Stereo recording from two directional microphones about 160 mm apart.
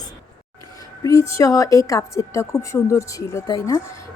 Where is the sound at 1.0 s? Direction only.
20° left (ahead or behind).